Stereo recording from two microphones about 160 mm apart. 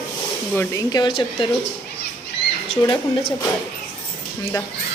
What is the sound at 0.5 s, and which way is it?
Speech, 20° left (ahead or behind).